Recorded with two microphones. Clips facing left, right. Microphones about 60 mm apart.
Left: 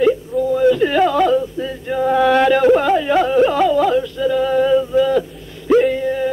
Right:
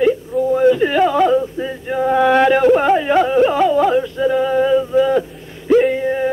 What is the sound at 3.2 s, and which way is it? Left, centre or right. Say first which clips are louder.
Carnatic music: right 1 dB; centre.